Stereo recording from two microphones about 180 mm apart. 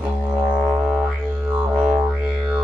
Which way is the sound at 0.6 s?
5° right (ahead or behind).